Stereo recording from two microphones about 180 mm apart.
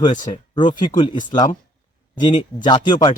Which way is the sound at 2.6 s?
25° left (ahead or behind).